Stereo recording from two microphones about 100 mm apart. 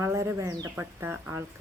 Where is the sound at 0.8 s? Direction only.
20° right (ahead or behind).